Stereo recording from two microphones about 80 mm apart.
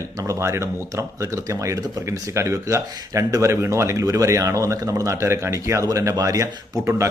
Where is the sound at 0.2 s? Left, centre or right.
Right.